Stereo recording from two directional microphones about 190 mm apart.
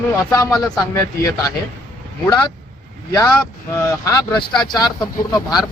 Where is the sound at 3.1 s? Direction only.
20° left (ahead or behind).